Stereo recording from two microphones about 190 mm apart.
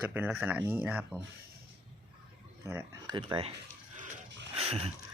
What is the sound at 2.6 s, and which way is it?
Speech, 15° right (ahead or behind).